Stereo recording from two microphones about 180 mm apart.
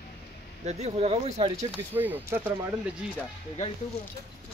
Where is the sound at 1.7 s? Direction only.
10° right (ahead or behind).